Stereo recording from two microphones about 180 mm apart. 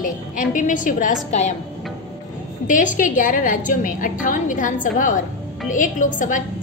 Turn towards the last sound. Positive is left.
turn(degrees=45)  # may be behind; listen again after turning